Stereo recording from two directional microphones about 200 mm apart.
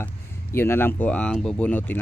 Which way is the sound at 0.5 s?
10° left (ahead or behind).